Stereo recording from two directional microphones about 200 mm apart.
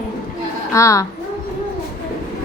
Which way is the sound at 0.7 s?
15° left (ahead or behind).